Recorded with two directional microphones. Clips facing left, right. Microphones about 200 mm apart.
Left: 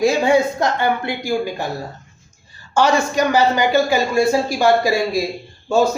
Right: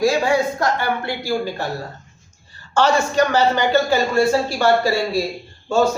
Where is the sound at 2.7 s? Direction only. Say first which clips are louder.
Even; 10° left (ahead or behind).